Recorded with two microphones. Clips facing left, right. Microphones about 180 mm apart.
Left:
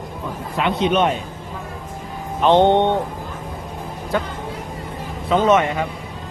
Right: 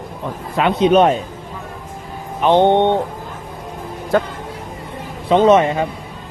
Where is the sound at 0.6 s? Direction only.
40° right (ahead or behind).